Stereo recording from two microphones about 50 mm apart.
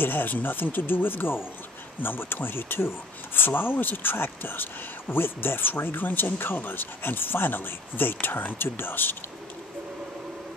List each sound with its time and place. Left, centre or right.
0.0 s speech: left